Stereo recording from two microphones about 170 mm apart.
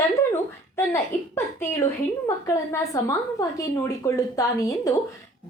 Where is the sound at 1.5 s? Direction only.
20° left (ahead or behind).